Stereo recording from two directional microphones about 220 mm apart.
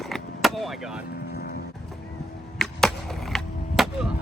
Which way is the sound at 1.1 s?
45° left (ahead or behind).